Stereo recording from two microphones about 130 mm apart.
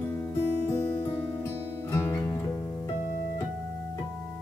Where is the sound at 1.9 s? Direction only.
20° left (ahead or behind).